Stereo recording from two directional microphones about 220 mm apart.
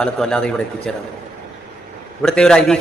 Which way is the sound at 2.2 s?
5° left (ahead or behind).